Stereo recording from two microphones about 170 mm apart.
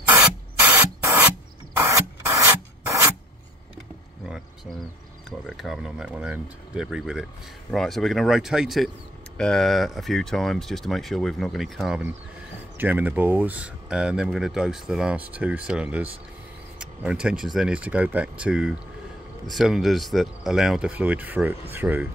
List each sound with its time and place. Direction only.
0.0 s printer: 10° right (ahead or behind)
1.8 s rub: 20° right (ahead or behind)
5.5 s speech: centre (ahead or behind)
12.7 s speech: 10° right (ahead or behind)